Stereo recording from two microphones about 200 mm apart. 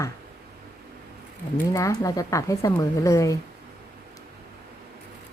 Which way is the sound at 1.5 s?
15° left (ahead or behind).